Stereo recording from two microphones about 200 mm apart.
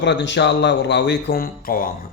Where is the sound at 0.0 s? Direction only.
60° left (ahead or behind).